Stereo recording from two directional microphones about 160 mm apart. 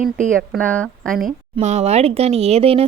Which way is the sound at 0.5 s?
10° left (ahead or behind).